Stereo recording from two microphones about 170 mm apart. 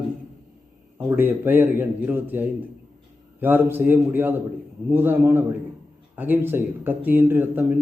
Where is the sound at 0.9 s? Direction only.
10° right (ahead or behind).